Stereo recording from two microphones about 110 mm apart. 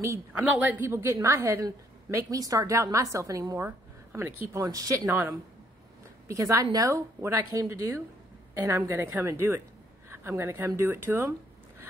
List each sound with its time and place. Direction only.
0.0 s a woman's voice: 25° right (ahead or behind)
0.4 s a woman's voice: 15° right (ahead or behind)
4.6 s a woman's voice: 35° right (ahead or behind)